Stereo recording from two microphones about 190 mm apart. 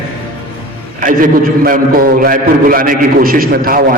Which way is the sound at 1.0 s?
45° right (ahead or behind).